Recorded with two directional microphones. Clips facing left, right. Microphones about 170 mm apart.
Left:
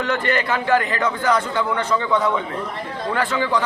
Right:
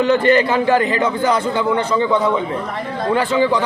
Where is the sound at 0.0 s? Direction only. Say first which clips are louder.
Right 8 dB; 30° right (ahead or behind).